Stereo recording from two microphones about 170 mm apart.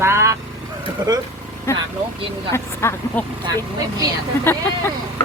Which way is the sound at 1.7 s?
15° left (ahead or behind).